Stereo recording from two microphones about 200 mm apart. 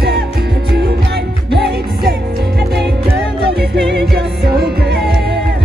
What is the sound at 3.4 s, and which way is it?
Music, 55° right (ahead or behind).